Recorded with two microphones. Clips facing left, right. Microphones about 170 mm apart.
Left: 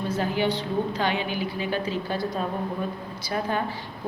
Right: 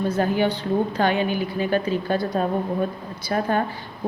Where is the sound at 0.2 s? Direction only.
50° right (ahead or behind).